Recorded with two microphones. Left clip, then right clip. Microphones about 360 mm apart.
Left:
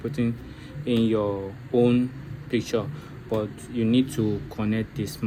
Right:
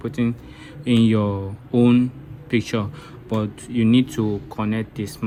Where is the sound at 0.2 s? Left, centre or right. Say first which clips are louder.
Right 4 dB; centre.